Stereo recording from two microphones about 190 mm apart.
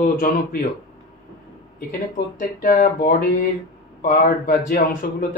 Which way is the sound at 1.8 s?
45° left (ahead or behind).